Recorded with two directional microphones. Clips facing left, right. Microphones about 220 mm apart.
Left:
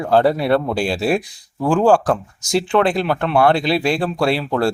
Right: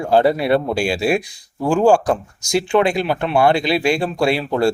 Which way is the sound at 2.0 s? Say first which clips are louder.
Even; centre (ahead or behind).